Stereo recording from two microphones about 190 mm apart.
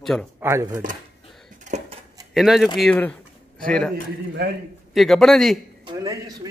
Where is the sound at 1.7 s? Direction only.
40° right (ahead or behind).